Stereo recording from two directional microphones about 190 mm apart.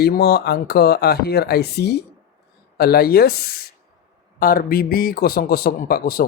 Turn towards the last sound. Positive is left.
turn(degrees=50)  # may be behind; listen again after turning